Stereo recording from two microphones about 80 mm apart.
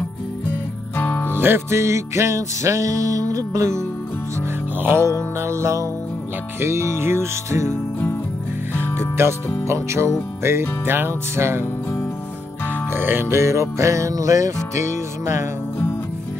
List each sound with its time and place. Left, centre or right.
0.9 s music: left
1.3 s music: right
4.7 s music: right
8.9 s music: right
12.9 s music: right